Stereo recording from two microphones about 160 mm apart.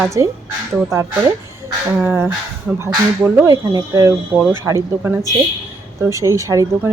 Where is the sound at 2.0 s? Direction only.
10° right (ahead or behind).